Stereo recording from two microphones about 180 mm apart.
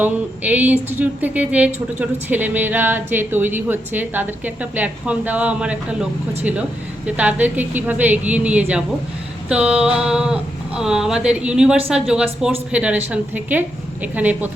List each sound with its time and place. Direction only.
0.0 s a woman's voice: 10° right (ahead or behind)